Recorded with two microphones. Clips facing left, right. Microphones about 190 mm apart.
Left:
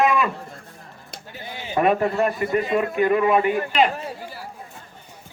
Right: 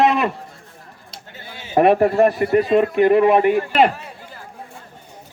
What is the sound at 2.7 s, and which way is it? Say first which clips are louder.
Speech: right 6 dB; 30° right (ahead or behind).